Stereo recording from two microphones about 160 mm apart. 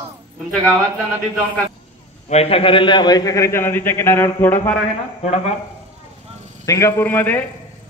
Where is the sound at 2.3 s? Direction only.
40° left (ahead or behind); by 4.8 s 10° left (ahead or behind).